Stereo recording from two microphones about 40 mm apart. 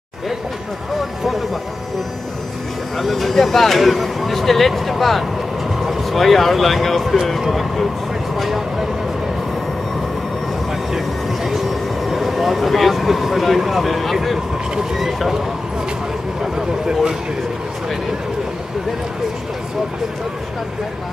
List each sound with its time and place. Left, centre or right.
0.9 s speech: centre
3.0 s speech: centre
11.4 s speech: centre
16.5 s speech: centre